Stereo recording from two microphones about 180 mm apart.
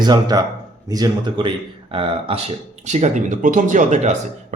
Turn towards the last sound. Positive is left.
turn(degrees=-45)  # may be behind; listen again after turning